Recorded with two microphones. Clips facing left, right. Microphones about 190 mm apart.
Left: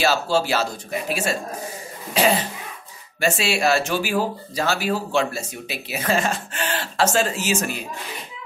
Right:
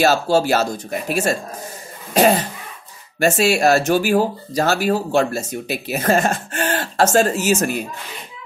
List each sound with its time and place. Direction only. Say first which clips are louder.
0.0 s speech: right 5 dB; 45° right (ahead or behind)